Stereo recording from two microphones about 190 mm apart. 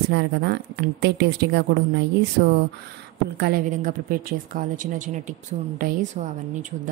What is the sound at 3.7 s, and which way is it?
Speech, 45° right (ahead or behind).